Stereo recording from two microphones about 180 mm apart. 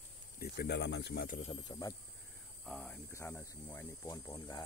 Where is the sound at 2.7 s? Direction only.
5° left (ahead or behind).